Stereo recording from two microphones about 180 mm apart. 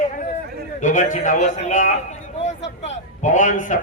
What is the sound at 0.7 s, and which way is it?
A man's voice, 45° left (ahead or behind).